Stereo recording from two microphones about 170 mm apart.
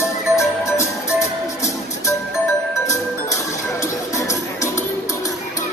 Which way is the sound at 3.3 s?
20° left (ahead or behind).